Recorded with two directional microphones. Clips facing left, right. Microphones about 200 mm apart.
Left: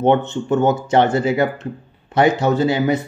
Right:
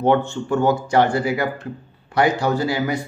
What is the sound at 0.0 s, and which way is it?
Speech, 20° left (ahead or behind).